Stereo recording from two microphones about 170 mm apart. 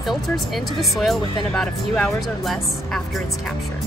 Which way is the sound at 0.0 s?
Centre (ahead or behind).